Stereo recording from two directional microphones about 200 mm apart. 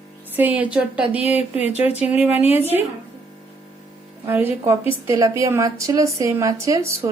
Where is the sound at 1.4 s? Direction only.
30° left (ahead or behind).